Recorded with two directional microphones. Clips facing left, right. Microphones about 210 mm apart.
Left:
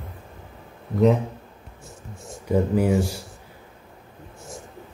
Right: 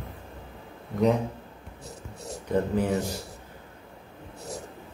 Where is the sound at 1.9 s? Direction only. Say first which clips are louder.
Right 2 dB; 40° right (ahead or behind).